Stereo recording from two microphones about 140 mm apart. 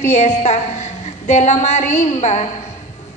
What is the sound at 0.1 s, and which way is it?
A woman's voice, 55° left (ahead or behind).